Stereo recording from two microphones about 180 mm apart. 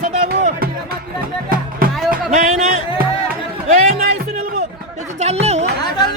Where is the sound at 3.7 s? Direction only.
50° right (ahead or behind).